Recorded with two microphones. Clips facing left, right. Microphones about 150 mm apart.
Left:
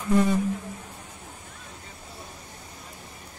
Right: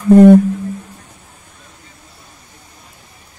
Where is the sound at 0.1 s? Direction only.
60° right (ahead or behind).